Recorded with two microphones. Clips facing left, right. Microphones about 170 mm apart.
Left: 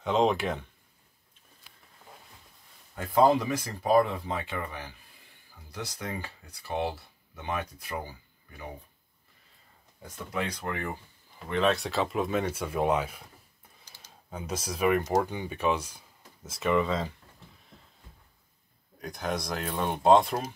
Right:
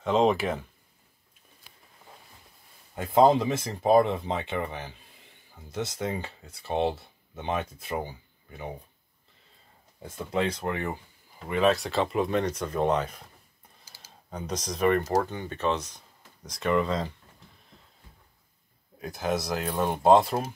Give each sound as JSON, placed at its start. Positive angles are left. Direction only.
{"t": 0.0, "sound": "speech", "side_deg": 0}
{"t": 3.1, "sound": "speech", "side_deg": -20}
{"t": 10.0, "sound": "speech", "side_deg": -25}
{"t": 11.4, "sound": "speech", "side_deg": -5}
{"t": 13.8, "sound": "computer keyboard", "side_deg": -5}
{"t": 14.3, "sound": "speech", "side_deg": 5}
{"t": 18.9, "sound": "speech", "side_deg": -5}